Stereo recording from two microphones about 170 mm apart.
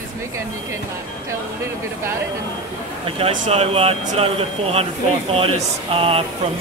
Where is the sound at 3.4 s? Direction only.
40° right (ahead or behind).